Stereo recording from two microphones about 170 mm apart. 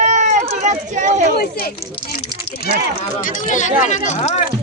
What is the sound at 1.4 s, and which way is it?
Speech, 60° left (ahead or behind).